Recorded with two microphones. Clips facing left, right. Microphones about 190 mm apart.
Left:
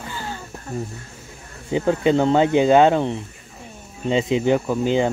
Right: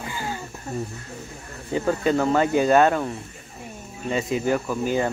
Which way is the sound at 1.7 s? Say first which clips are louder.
Left 4 dB; 20° left (ahead or behind).